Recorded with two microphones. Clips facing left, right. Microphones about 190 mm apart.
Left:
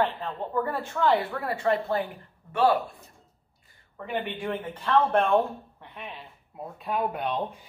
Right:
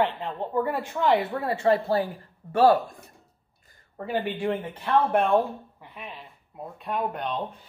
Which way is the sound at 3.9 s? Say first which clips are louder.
Right 3 dB; 35° right (ahead or behind).